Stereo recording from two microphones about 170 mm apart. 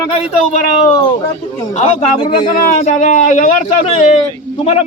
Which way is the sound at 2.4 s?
55° left (ahead or behind).